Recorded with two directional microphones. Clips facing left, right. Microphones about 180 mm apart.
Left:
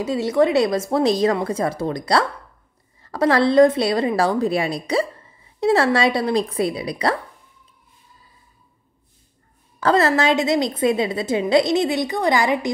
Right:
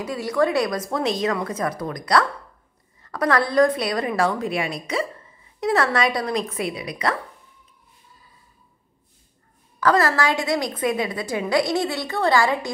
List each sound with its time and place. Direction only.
0.0 s a woman's voice: 25° left (ahead or behind)
9.8 s a woman's voice: 25° left (ahead or behind)